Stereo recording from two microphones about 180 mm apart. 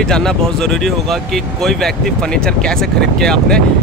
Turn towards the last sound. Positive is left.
turn(degrees=5)  # may be behind; listen again after turning